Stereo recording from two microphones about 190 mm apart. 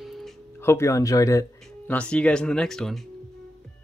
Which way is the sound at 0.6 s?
15° left (ahead or behind).